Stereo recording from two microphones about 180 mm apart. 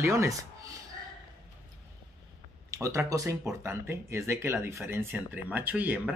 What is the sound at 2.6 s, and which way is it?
Speech, 15° right (ahead or behind).